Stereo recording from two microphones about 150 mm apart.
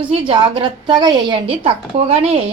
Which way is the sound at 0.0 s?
35° right (ahead or behind).